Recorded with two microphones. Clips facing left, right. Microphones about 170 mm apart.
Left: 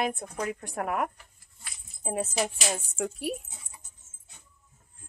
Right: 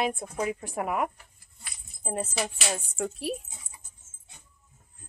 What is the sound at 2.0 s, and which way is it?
A woman's voice, 10° left (ahead or behind).